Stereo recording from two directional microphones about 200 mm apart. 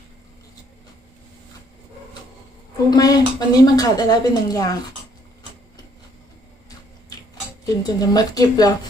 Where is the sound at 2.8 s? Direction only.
20° left (ahead or behind).